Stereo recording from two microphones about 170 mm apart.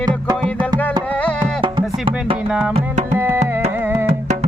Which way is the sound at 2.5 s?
5° right (ahead or behind).